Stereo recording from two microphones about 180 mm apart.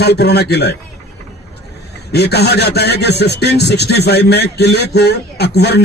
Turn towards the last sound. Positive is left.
turn(degrees=65)  # may be behind; listen again after turning